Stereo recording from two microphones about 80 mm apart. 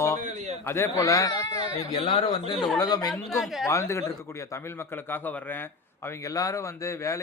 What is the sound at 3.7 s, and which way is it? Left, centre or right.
Speech, left.